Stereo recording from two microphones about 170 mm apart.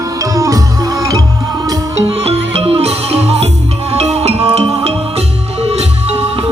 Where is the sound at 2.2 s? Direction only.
35° right (ahead or behind).